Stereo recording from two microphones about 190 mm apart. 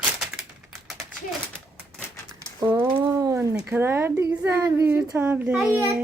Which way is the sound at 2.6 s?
10° right (ahead or behind).